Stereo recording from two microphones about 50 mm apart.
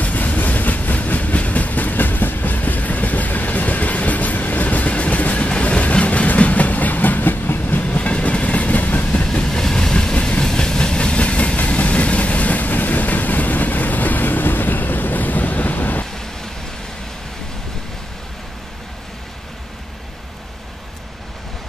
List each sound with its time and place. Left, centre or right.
0.0 s train: left
7.8 s train: left